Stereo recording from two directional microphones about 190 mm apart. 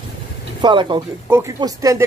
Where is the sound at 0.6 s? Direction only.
25° right (ahead or behind).